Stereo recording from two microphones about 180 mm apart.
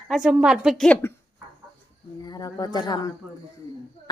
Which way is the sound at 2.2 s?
20° left (ahead or behind).